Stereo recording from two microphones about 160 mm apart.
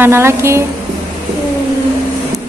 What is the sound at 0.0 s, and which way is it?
Speech, 15° right (ahead or behind).